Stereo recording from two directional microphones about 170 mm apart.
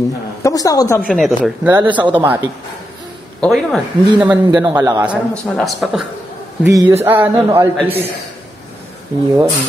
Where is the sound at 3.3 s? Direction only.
5° left (ahead or behind).